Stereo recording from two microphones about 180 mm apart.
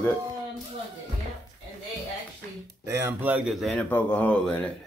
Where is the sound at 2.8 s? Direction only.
10° right (ahead or behind).